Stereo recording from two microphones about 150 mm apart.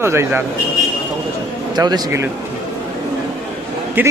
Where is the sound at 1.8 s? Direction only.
25° right (ahead or behind).